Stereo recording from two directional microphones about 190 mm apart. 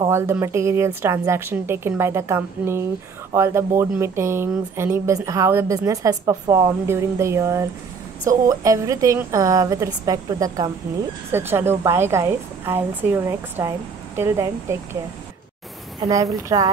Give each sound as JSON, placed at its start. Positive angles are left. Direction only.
{"t": 0.0, "sound": "speech", "side_deg": -15}
{"t": 16.0, "sound": "speech", "side_deg": -20}